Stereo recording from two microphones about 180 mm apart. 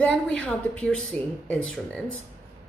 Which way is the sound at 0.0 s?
5° left (ahead or behind).